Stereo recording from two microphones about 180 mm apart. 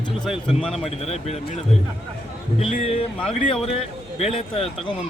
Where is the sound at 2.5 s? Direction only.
35° left (ahead or behind).